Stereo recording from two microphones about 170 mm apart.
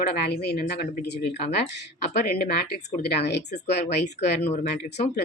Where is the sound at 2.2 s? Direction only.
65° left (ahead or behind).